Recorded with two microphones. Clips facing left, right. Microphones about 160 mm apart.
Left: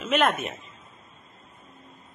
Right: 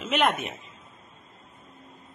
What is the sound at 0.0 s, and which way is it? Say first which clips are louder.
Speech: left 1 dB; 20° right (ahead or behind).